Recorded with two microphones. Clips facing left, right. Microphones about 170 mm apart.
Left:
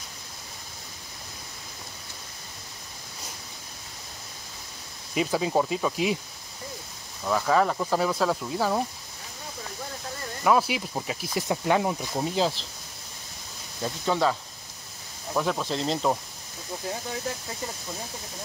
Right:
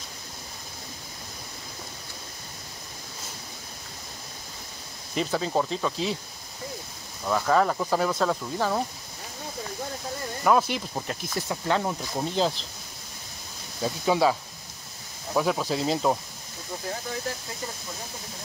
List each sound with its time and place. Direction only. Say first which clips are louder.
5.1 s speech: left 2 dB; 10° left (ahead or behind)
7.2 s speech: even; centre (ahead or behind)
10.4 s speech: even; 5° left (ahead or behind)
13.8 s speech: right 2 dB; 10° right (ahead or behind)
15.3 s speech: right 2 dB; 5° right (ahead or behind)